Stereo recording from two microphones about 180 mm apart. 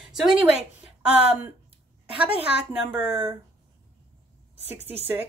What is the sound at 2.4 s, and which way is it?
Speech, 10° right (ahead or behind).